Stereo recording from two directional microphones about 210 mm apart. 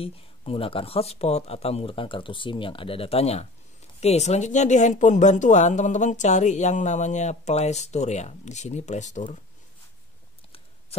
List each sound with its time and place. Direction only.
0.0 s speech: 25° left (ahead or behind)